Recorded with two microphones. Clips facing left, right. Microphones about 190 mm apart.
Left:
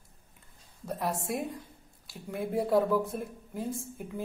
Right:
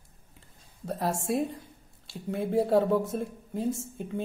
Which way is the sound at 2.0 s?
25° right (ahead or behind).